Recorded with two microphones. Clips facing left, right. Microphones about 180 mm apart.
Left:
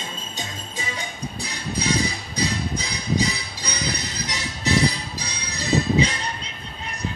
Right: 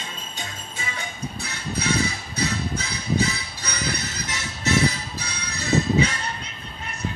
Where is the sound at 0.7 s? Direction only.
15° left (ahead or behind).